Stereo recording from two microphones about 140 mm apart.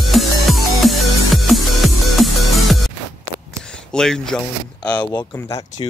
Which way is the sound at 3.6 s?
5° left (ahead or behind).